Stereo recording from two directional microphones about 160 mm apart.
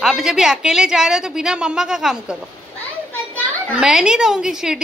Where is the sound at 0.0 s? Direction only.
5° right (ahead or behind).